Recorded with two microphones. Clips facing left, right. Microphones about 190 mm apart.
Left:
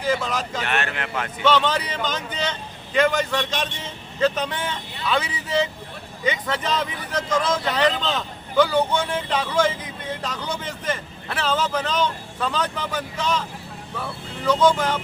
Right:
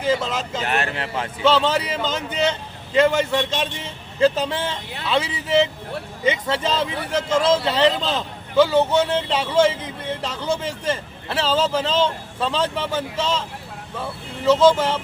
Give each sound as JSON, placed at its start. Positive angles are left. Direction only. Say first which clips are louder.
{"t": 0.0, "sound": "speech", "louder": "right 2 dB", "side_deg": -25}